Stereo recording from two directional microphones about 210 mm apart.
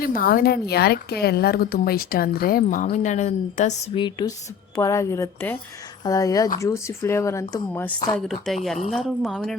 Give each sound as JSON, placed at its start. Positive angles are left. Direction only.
{"t": 0.0, "sound": "a woman's voice", "side_deg": 45}
{"t": 8.3, "sound": "speech", "side_deg": 0}